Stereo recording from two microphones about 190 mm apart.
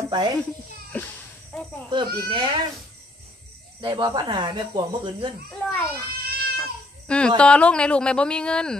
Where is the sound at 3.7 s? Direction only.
25° right (ahead or behind).